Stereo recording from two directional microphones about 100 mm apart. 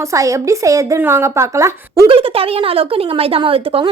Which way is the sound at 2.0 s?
65° right (ahead or behind).